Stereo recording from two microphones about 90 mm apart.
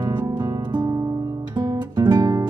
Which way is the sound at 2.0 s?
55° right (ahead or behind).